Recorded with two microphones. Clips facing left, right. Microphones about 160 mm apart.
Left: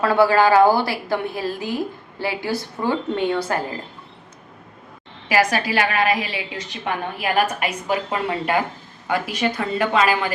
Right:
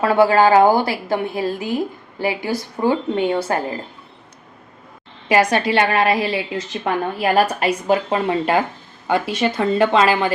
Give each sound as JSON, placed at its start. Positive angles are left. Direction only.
{"t": 0.0, "sound": "a woman's voice", "side_deg": -20}
{"t": 5.3, "sound": "a woman's voice", "side_deg": -25}